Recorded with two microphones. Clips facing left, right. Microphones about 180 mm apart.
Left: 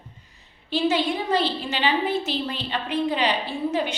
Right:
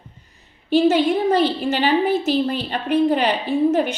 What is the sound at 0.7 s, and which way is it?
A woman's voice, 50° right (ahead or behind).